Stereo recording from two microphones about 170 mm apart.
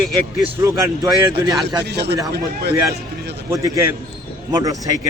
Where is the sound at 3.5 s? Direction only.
20° right (ahead or behind).